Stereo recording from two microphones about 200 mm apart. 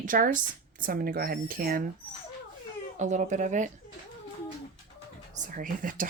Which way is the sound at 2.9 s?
35° right (ahead or behind).